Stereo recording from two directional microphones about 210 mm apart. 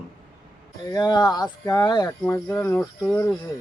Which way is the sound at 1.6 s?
15° left (ahead or behind).